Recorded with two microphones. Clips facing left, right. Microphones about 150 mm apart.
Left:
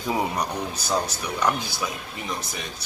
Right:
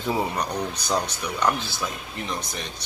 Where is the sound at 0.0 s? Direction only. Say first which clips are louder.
Even; 10° left (ahead or behind).